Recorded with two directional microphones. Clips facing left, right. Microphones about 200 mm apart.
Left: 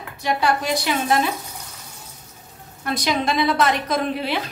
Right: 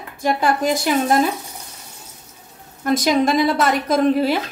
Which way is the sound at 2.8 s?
45° right (ahead or behind).